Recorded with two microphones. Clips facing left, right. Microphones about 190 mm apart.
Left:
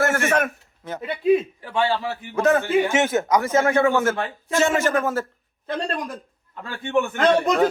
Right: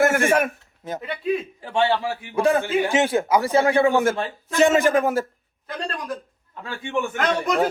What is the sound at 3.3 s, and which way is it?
Speech, 30° right (ahead or behind).